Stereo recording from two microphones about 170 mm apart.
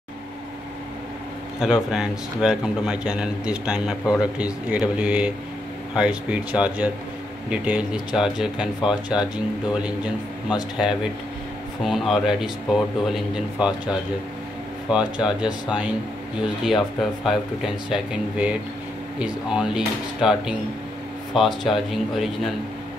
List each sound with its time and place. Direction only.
1.6 s a man's voice: 5° right (ahead or behind)